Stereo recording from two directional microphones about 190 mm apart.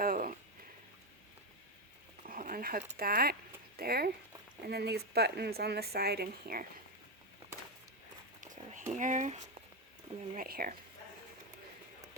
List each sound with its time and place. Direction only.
0.0 s a sound: 50° right (ahead or behind)
2.2 s a woman's voice: 45° right (ahead or behind)
8.4 s run: 40° right (ahead or behind)
8.9 s speech: 40° right (ahead or behind)
10.3 s a woman's voice: 50° right (ahead or behind)